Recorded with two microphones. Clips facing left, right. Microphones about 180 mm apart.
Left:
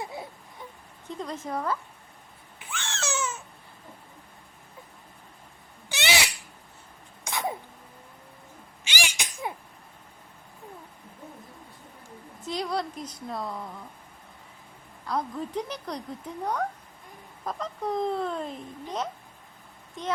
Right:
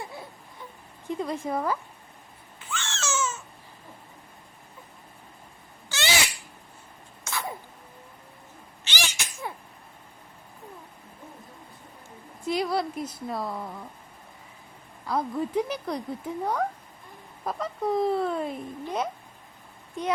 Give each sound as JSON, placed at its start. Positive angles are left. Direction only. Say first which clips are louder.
{"t": 0.0, "sound": "baby cry", "louder": "left 2 dB", "side_deg": 25}
{"t": 1.0, "sound": "a woman's voice", "louder": "right 5 dB", "side_deg": -10}
{"t": 2.8, "sound": "baby cry", "louder": "right 1 dB", "side_deg": 15}
{"t": 5.9, "sound": "a sound", "louder": "even", "side_deg": 20}
{"t": 8.8, "sound": "sneeze", "louder": "even", "side_deg": 10}
{"t": 12.5, "sound": "a sound", "louder": "right 4 dB", "side_deg": -5}
{"t": 13.2, "sound": "speech", "louder": "even", "side_deg": -5}
{"t": 15.0, "sound": "speech", "louder": "right 3 dB", "side_deg": -10}